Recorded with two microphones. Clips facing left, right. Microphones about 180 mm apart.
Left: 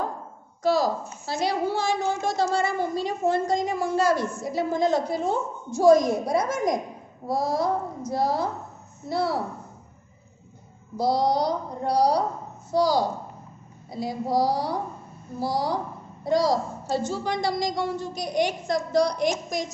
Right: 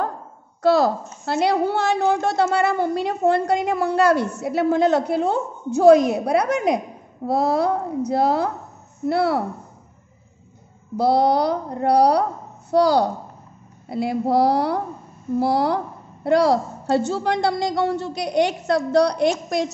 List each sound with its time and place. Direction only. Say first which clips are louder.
0.6 s a woman's voice: right 5 dB; 65° right (ahead or behind)
11.0 s a woman's voice: right 5 dB; 60° right (ahead or behind)